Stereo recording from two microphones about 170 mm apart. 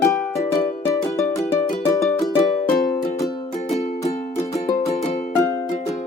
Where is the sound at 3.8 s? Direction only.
40° left (ahead or behind).